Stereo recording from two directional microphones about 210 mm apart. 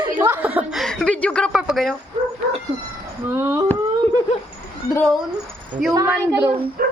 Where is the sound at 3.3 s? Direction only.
10° right (ahead or behind).